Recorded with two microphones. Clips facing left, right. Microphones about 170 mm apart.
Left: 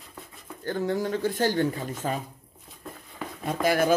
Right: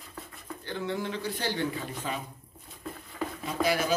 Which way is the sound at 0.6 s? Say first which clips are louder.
Left 6 dB; 45° left (ahead or behind).